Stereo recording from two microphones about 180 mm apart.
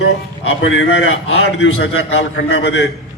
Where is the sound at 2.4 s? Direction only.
80° left.